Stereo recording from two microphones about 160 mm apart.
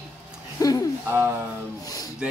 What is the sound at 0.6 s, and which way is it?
Speech, 20° left (ahead or behind).